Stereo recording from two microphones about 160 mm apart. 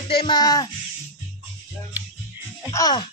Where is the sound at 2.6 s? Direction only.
25° left (ahead or behind).